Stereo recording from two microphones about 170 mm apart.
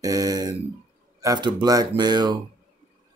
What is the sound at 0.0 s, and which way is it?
Speech, 20° right (ahead or behind).